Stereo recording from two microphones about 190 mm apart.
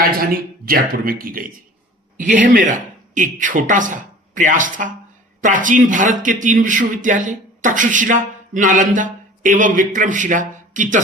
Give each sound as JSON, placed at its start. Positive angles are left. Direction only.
{"t": 0.2, "sound": "speech", "side_deg": -50}